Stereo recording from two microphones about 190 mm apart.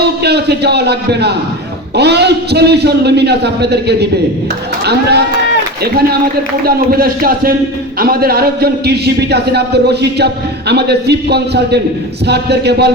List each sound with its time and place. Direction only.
0.2 s a man's voice: 60° right (ahead or behind)
6.7 s a man's voice: 50° right (ahead or behind)